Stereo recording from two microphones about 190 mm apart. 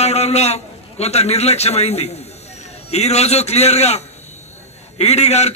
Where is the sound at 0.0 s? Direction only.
35° left (ahead or behind).